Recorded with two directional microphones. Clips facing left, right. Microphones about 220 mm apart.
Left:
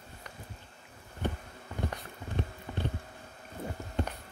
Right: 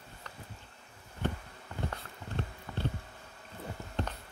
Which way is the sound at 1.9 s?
15° left (ahead or behind).